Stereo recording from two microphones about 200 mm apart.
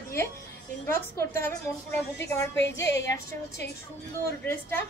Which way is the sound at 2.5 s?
65° left (ahead or behind).